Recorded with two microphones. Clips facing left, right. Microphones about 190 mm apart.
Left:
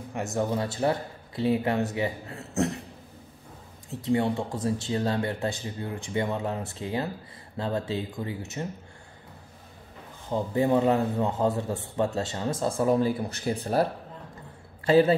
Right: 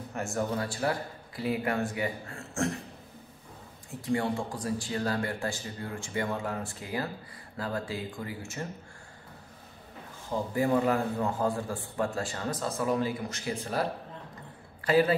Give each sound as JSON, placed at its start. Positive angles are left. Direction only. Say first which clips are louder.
{"t": 0.1, "sound": "speech", "louder": "left 3 dB", "side_deg": 20}
{"t": 4.0, "sound": "speech", "louder": "left 4 dB", "side_deg": 20}
{"t": 10.3, "sound": "speech", "louder": "left 3 dB", "side_deg": 25}
{"t": 14.9, "sound": "speech", "louder": "left 4 dB", "side_deg": 25}